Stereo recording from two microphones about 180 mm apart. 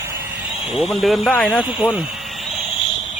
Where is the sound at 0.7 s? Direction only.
Centre (ahead or behind).